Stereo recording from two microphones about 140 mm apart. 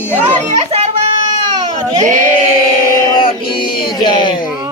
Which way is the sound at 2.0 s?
65° right (ahead or behind).